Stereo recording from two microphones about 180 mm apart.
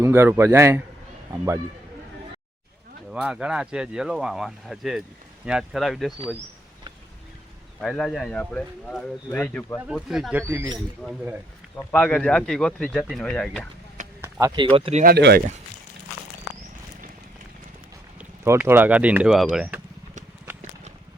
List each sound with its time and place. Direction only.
0.0 s speech: 15° right (ahead or behind)
3.1 s speech: 5° right (ahead or behind)
7.8 s speech: 5° left (ahead or behind)
9.8 s speech: 5° right (ahead or behind)
10.4 s speech: 15° right (ahead or behind)
11.9 s speech: 5° left (ahead or behind)
14.2 s a sound: 10° right (ahead or behind)
14.5 s speech: 30° right (ahead or behind)
15.0 s speech: 60° right (ahead or behind)
18.2 s speech: 10° right (ahead or behind)